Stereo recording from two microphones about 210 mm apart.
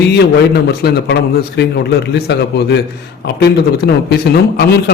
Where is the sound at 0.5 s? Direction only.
50° left (ahead or behind).